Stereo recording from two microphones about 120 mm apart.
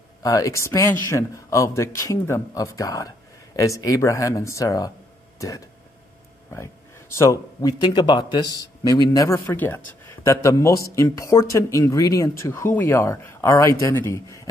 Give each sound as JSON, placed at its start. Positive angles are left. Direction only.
{"t": 0.2, "sound": "speech", "side_deg": 25}
{"t": 6.5, "sound": "speech", "side_deg": 25}
{"t": 7.8, "sound": "speech", "side_deg": 40}
{"t": 9.5, "sound": "speech", "side_deg": 15}